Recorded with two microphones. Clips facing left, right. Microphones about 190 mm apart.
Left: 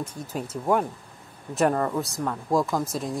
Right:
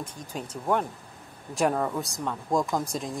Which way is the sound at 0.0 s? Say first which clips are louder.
Left 4 dB; 5° left (ahead or behind).